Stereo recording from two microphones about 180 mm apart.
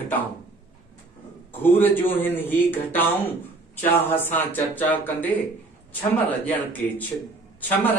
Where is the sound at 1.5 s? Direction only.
10° left (ahead or behind).